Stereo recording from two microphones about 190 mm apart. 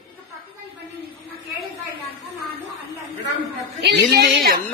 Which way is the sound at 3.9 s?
60° right (ahead or behind).